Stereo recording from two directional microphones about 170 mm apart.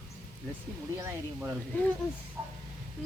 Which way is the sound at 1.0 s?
15° right (ahead or behind).